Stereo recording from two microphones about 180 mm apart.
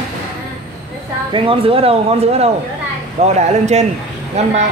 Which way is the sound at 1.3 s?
30° right (ahead or behind).